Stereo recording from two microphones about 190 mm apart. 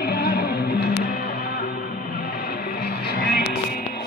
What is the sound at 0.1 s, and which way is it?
Music, 55° left (ahead or behind).